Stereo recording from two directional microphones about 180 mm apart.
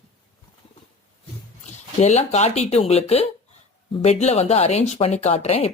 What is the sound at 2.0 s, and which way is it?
Speech, 40° left (ahead or behind).